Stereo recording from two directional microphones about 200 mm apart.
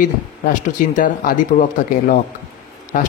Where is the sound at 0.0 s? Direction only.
40° left (ahead or behind).